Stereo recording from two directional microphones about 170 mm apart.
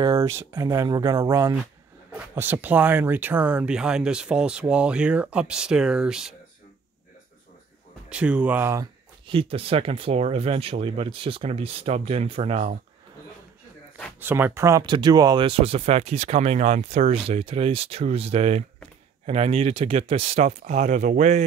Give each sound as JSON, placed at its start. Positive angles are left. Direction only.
{"t": 0.0, "sound": "speech", "side_deg": -20}
{"t": 8.1, "sound": "speech", "side_deg": -5}
{"t": 9.3, "sound": "speech", "side_deg": -35}
{"t": 14.2, "sound": "speech", "side_deg": -15}